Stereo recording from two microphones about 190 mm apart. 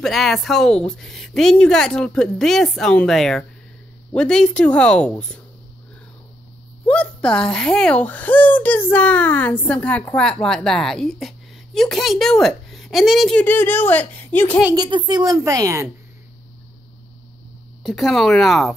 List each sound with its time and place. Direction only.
0.0 s speech: centre (ahead or behind)
6.9 s speech: 5° left (ahead or behind)
14.8 s a woman's voice: 25° right (ahead or behind)
17.8 s speech: centre (ahead or behind)